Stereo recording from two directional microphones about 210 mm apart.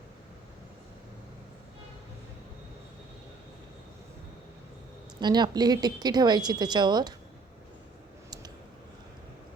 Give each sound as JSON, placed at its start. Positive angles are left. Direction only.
{"t": 5.2, "sound": "speech", "side_deg": -20}